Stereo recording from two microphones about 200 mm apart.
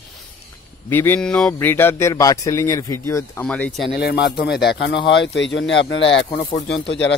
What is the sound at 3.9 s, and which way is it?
Speech, 55° left (ahead or behind).